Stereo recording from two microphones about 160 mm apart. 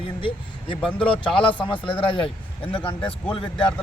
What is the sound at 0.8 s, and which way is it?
Speech, 10° left (ahead or behind).